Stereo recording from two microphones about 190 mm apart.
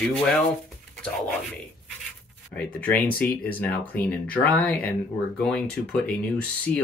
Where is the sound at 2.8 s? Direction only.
10° left (ahead or behind).